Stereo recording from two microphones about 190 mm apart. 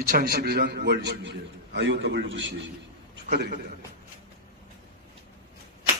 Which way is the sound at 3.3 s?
55° right (ahead or behind).